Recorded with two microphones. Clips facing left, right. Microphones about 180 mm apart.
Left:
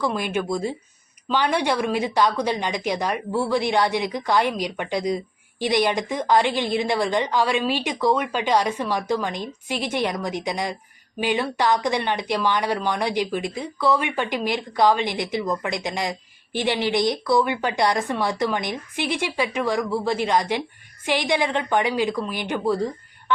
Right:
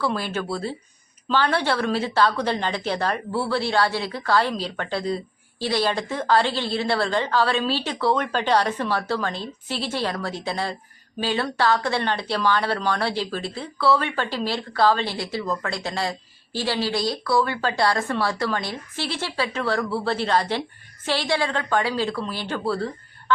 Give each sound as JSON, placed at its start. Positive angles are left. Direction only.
{"t": 0.0, "sound": "speech", "side_deg": 15}